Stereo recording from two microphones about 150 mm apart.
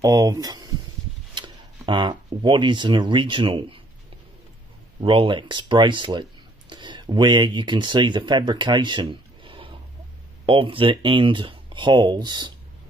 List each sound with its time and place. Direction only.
0.0 s speech: 25° right (ahead or behind)
5.0 s speech: 35° right (ahead or behind)